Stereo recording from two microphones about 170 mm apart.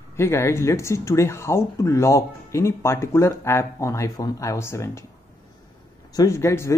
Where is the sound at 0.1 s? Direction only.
15° left (ahead or behind).